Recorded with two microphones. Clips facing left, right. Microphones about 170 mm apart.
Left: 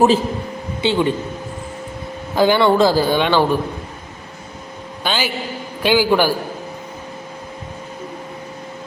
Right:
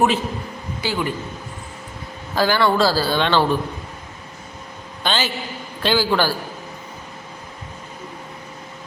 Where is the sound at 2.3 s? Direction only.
20° left (ahead or behind).